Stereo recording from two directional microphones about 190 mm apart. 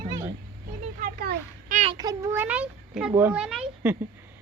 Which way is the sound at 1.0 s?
50° right (ahead or behind).